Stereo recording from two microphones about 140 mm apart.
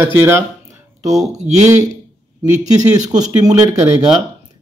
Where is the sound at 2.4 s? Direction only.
25° right (ahead or behind).